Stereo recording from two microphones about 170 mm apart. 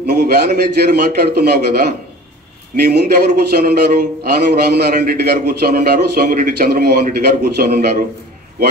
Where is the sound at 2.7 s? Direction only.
65° right (ahead or behind).